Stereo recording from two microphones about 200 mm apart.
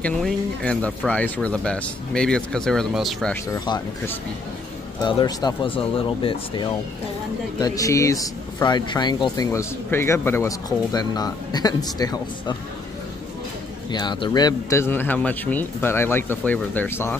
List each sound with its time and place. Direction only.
0.0 s speech: 5° left (ahead or behind)
3.5 s speech: 20° left (ahead or behind)
13.8 s speech: 20° left (ahead or behind)